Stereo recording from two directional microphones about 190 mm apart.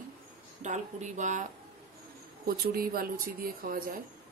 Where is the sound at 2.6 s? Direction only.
50° right (ahead or behind).